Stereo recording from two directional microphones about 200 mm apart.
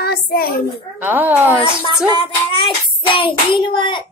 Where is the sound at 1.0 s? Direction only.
10° right (ahead or behind).